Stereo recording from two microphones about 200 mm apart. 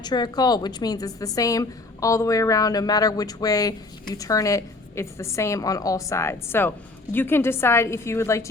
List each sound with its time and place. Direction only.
0.0 s a woman's voice: 20° left (ahead or behind)